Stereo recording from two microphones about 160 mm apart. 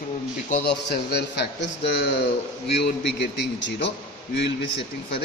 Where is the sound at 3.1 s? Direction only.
90° left.